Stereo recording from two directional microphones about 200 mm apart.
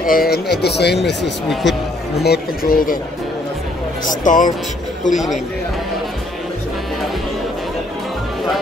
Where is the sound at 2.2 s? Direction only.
50° left (ahead or behind).